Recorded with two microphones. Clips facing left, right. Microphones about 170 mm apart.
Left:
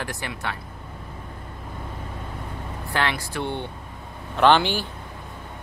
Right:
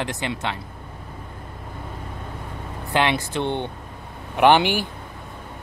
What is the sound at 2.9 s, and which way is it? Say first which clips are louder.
Speech: right 5 dB; 20° right (ahead or behind).